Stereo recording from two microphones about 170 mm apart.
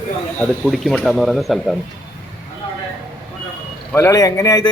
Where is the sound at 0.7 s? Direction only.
Centre (ahead or behind).